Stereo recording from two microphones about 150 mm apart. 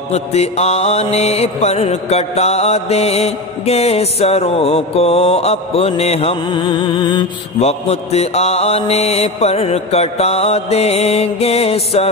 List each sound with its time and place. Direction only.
0.1 s mantra: 45° left (ahead or behind)
7.6 s mantra: 45° left (ahead or behind)